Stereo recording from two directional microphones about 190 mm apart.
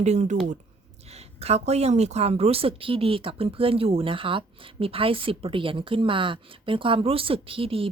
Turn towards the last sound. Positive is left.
turn(degrees=-30)  # may be behind; listen again after turning